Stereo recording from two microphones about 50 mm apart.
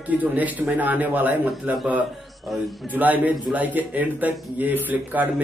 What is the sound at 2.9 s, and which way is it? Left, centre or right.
Speech, right.